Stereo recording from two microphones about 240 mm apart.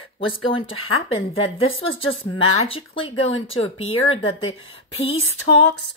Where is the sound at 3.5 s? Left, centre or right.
Left.